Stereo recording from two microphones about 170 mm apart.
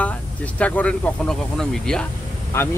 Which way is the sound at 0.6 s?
10° left (ahead or behind).